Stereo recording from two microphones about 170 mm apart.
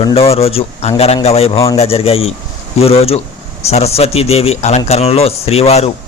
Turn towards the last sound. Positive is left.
turn(degrees=35)  # may be behind; listen again after turning